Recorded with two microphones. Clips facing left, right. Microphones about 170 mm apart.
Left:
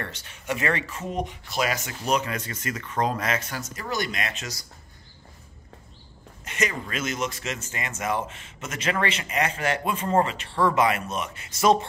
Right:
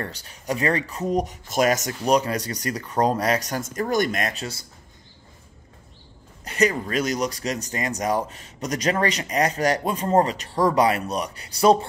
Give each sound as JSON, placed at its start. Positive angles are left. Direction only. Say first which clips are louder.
{"t": 0.0, "sound": "speech", "louder": "right 3 dB", "side_deg": -35}
{"t": 6.4, "sound": "speech", "louder": "right 7 dB", "side_deg": -35}